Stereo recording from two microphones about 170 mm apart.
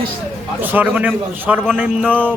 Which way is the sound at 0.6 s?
10° right (ahead or behind).